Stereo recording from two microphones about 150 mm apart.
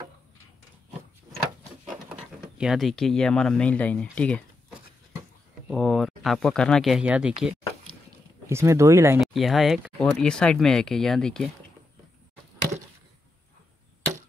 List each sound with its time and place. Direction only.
1.9 s speech: 5° right (ahead or behind)
8.5 s speech: 20° right (ahead or behind)
9.2 s speech: centre (ahead or behind)